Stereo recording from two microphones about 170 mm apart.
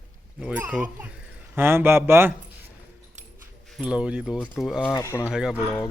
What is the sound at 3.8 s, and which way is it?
A man's voice, 5° right (ahead or behind).